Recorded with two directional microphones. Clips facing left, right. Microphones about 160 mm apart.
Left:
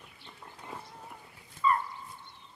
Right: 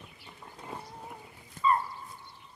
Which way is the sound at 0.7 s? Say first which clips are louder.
Right 3 dB; 15° right (ahead or behind).